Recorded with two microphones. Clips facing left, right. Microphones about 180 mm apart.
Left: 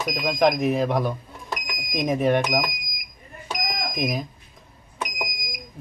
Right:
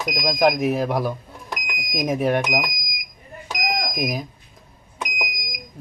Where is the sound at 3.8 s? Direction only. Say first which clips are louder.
Right 1 dB; 5° right (ahead or behind).